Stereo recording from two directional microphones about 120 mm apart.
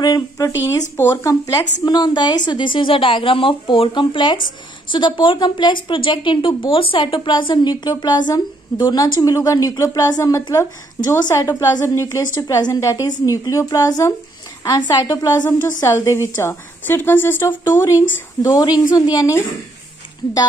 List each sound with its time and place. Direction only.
0.0 s a woman's voice: 35° left (ahead or behind)